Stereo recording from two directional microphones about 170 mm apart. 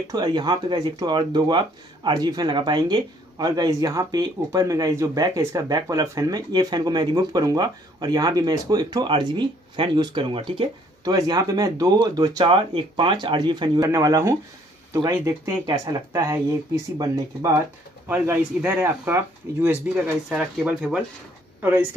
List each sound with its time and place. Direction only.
0.1 s speech: 25° right (ahead or behind); by 21.8 s 10° right (ahead or behind)